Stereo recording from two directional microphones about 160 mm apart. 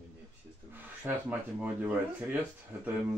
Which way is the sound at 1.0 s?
10° right (ahead or behind).